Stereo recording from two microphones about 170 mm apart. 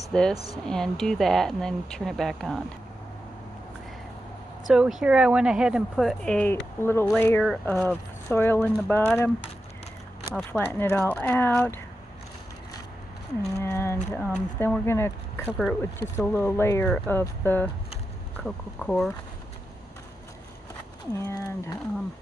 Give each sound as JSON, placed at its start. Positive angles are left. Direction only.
{"t": 0.1, "sound": "speech", "side_deg": 5}
{"t": 4.6, "sound": "speech", "side_deg": 0}
{"t": 10.3, "sound": "speech", "side_deg": 10}
{"t": 13.6, "sound": "speech", "side_deg": 15}
{"t": 21.1, "sound": "speech", "side_deg": 20}